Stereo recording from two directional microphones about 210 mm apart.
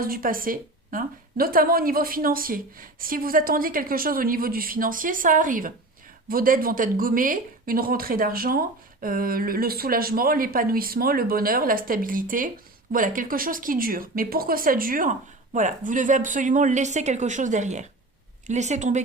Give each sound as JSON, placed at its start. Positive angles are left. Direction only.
{"t": 0.0, "sound": "speech", "side_deg": -45}